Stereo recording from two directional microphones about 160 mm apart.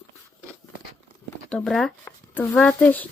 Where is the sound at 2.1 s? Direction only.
15° left (ahead or behind).